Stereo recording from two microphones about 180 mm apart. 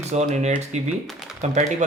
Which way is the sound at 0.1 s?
40° right (ahead or behind).